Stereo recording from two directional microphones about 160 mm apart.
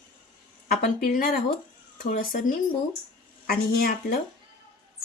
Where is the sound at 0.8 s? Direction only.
60° left (ahead or behind).